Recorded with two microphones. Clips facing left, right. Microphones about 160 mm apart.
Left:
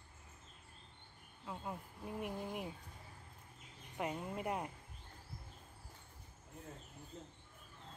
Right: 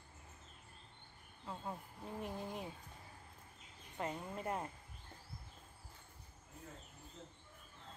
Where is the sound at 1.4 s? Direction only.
5° left (ahead or behind).